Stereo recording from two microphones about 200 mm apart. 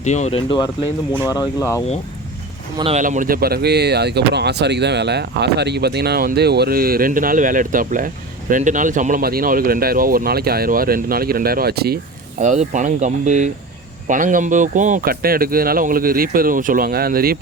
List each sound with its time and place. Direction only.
0.0 s speech: 35° left (ahead or behind); by 1.8 s 15° left (ahead or behind)
2.7 s speech: 30° right (ahead or behind)
3.0 s speech: 40° right (ahead or behind)
12.4 s speech: 35° right (ahead or behind)